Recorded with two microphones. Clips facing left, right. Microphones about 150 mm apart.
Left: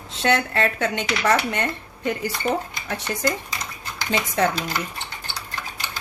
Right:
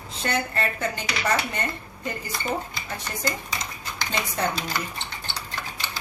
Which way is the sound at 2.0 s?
75° left (ahead or behind).